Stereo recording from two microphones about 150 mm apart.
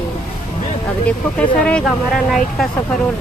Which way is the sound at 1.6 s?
5° left (ahead or behind).